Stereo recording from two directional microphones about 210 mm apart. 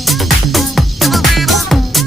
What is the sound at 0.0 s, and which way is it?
Music, centre (ahead or behind).